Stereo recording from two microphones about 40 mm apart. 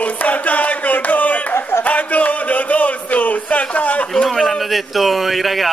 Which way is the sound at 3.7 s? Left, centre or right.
Left.